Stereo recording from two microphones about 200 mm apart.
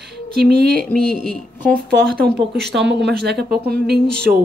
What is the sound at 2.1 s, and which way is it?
Speech, 50° right (ahead or behind).